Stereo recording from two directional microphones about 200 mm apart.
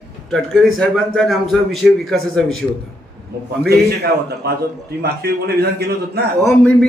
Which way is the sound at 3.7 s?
55° right (ahead or behind).